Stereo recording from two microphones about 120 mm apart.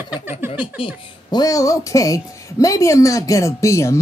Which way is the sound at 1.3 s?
30° left (ahead or behind).